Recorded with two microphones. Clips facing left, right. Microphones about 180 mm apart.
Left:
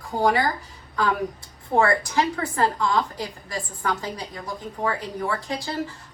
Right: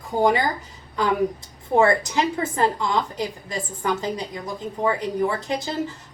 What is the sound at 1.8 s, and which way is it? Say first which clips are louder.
A woman's voice: right 2 dB; 20° right (ahead or behind).